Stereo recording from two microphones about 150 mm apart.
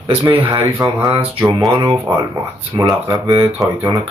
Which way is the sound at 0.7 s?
20° right (ahead or behind).